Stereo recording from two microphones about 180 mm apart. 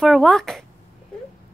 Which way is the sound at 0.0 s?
5° left (ahead or behind).